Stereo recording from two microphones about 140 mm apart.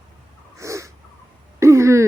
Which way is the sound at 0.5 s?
20° right (ahead or behind).